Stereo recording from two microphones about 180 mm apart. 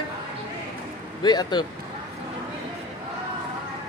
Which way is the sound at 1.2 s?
25° left (ahead or behind).